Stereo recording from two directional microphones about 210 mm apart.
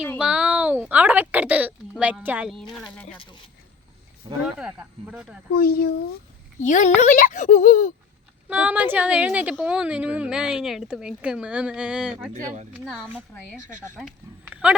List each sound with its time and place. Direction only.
0.2 s a woman's voice: 5° right (ahead or behind)
4.4 s a woman's voice: 5° right (ahead or behind)
5.5 s speech: 45° left (ahead or behind)
8.4 s a woman's voice: 5° right (ahead or behind)
12.3 s speech: 35° right (ahead or behind)
12.7 s a woman's voice: 5° right (ahead or behind)